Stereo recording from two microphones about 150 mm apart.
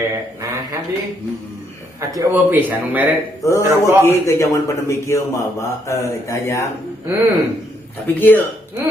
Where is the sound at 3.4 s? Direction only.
20° left (ahead or behind).